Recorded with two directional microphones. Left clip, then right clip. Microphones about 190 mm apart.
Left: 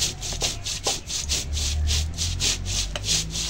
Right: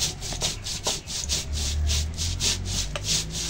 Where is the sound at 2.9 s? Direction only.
5° left (ahead or behind).